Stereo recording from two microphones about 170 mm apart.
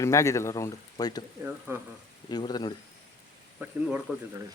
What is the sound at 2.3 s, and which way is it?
Speech, 25° left (ahead or behind).